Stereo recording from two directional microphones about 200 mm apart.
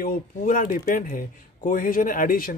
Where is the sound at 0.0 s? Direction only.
45° left (ahead or behind).